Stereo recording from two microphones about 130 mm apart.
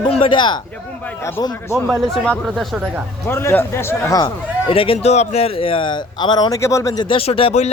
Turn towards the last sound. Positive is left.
turn(degrees=50)  # may be behind; listen again after turning